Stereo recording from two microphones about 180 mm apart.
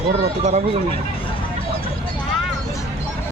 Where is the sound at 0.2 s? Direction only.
40° right (ahead or behind).